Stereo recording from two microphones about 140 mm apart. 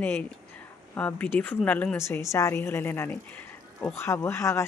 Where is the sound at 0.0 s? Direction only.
10° left (ahead or behind).